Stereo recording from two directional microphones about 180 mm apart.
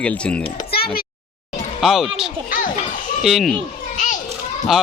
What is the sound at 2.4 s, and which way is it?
Children playing, 50° left (ahead or behind).